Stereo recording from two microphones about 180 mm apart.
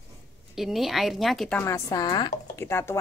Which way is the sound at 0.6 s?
Centre (ahead or behind).